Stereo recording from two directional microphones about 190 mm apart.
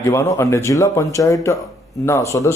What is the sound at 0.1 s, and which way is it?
Speech, 15° left (ahead or behind).